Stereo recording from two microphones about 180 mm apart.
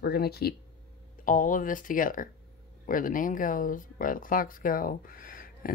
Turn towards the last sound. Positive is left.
turn(degrees=50)  # may be behind; listen again after turning